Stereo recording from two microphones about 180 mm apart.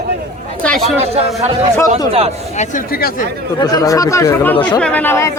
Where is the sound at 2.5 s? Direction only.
50° left (ahead or behind).